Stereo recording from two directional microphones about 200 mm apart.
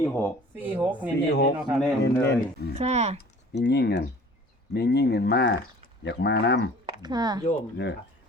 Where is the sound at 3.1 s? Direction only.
55° left (ahead or behind).